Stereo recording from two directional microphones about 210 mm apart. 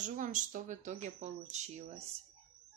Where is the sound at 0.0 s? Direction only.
35° right (ahead or behind).